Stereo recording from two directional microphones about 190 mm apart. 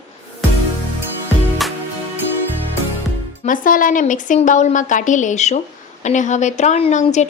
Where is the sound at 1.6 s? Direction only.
Centre (ahead or behind).